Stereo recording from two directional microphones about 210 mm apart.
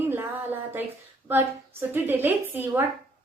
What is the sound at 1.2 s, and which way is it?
A woman's voice, 10° right (ahead or behind).